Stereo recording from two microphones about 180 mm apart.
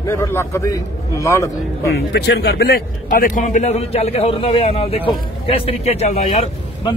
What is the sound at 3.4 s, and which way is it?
A man's voice, 45° left (ahead or behind).